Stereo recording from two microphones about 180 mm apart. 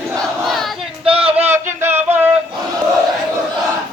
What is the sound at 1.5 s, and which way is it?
Music, 10° right (ahead or behind).